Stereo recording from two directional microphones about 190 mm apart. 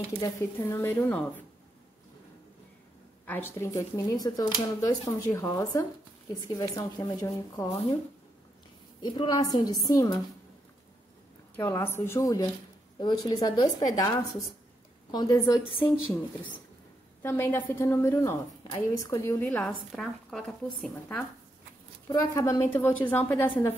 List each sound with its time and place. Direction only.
0.2 s speech: 15° left (ahead or behind)
3.3 s speech: 10° left (ahead or behind)
9.0 s a woman's voice: 25° left (ahead or behind)
11.6 s a woman's voice: 15° left (ahead or behind)
17.2 s a woman's voice: 10° left (ahead or behind)
22.1 s speech: 15° left (ahead or behind)